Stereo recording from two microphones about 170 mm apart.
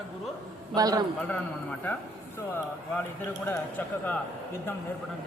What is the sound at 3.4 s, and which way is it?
Speech, 10° left (ahead or behind).